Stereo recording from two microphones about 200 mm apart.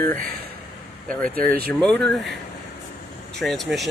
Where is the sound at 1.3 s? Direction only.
45° right (ahead or behind).